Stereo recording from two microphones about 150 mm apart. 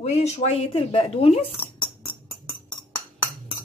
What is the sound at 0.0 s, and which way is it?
Speech, 45° left (ahead or behind).